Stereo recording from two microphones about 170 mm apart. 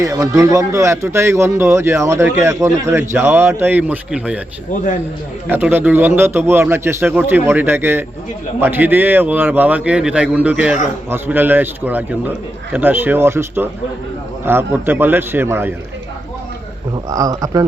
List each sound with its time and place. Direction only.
0.0 s a man's voice: 15° right (ahead or behind)
5.5 s a man's voice: 10° right (ahead or behind)
16.9 s speech: 20° right (ahead or behind)